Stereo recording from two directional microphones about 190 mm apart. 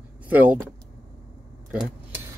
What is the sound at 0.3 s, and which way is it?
Speech, 10° right (ahead or behind).